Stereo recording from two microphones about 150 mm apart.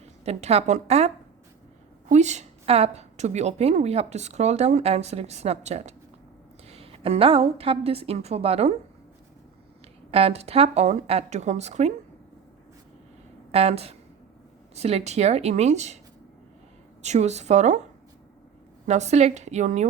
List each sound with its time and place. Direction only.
0.3 s a woman's voice: 45° right (ahead or behind)
10.1 s a woman's voice: 40° right (ahead or behind)
13.5 s a woman's voice: 40° right (ahead or behind)
17.0 s a woman's voice: 50° right (ahead or behind)
18.9 s a woman's voice: 50° right (ahead or behind)